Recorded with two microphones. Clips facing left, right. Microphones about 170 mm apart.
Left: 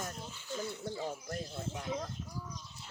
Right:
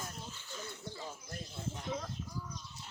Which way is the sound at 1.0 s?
65° left (ahead or behind).